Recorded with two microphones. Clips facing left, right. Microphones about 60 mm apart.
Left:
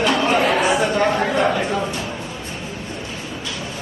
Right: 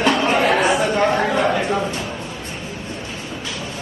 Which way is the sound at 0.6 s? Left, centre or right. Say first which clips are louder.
Even; centre.